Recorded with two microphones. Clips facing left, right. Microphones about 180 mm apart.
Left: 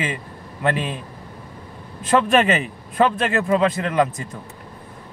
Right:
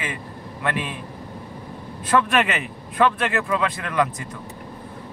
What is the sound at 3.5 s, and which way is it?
Speech, 25° left (ahead or behind).